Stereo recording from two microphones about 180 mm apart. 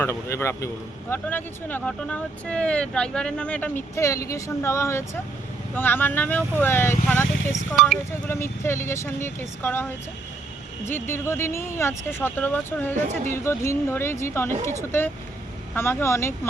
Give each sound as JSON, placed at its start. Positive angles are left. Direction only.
{"t": 0.0, "sound": "speech", "side_deg": 15}
{"t": 7.5, "sound": "speech", "side_deg": 0}
{"t": 8.1, "sound": "speech", "side_deg": 15}
{"t": 10.8, "sound": "speech", "side_deg": 15}
{"t": 13.0, "sound": "speech", "side_deg": -40}
{"t": 13.3, "sound": "speech", "side_deg": 15}